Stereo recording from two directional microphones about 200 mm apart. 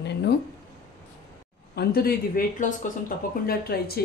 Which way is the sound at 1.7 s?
50° left (ahead or behind).